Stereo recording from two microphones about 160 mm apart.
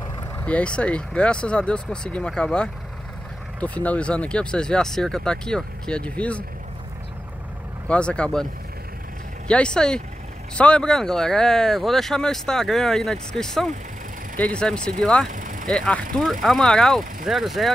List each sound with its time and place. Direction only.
0.5 s speech: 5° left (ahead or behind)
7.9 s speech: 5° left (ahead or behind)
9.5 s speech: 5° left (ahead or behind)
15.2 s vehicle: 55° right (ahead or behind)
15.7 s speech: 5° left (ahead or behind)